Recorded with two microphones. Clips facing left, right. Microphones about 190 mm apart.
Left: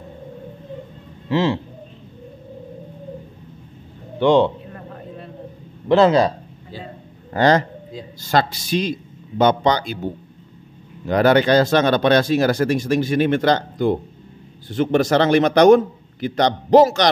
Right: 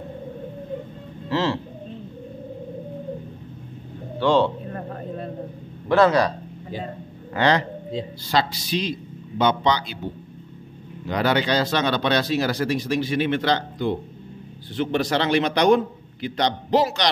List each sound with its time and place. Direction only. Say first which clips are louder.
1.3 s speech: left 4 dB; 15° left (ahead or behind)
4.2 s a man's voice: left 4 dB; 20° left (ahead or behind)
5.9 s speech: left 3 dB; 20° left (ahead or behind)
7.3 s speech: left 4 dB; 45° left (ahead or behind)
11.1 s speech: left 7 dB; 50° left (ahead or behind)